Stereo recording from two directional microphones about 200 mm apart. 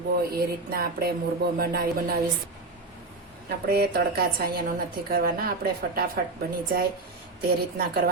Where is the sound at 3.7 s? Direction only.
50° right (ahead or behind).